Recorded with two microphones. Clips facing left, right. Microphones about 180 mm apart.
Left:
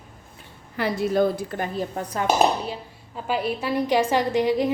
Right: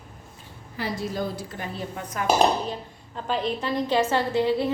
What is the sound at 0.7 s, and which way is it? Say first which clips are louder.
Speech: left 7 dB; 60° left (ahead or behind).